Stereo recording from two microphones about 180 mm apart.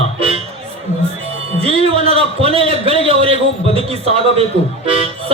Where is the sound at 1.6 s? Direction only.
30° right (ahead or behind).